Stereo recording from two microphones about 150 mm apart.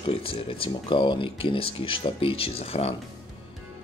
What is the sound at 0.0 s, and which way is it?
Speech, 35° left (ahead or behind).